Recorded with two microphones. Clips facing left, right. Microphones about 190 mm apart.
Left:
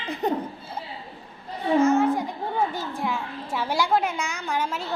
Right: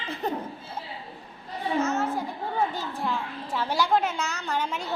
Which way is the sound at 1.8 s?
15° left (ahead or behind).